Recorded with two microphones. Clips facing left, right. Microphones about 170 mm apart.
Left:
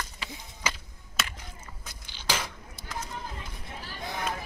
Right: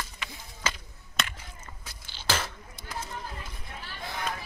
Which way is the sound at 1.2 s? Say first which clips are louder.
Right 1 dB; 5° left (ahead or behind).